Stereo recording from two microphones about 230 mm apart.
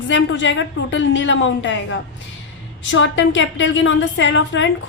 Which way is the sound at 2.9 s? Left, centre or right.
Left.